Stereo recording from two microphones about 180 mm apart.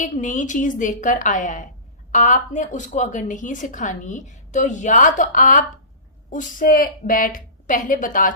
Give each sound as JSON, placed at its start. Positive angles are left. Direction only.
{"t": 0.0, "sound": "a woman's voice", "side_deg": 45}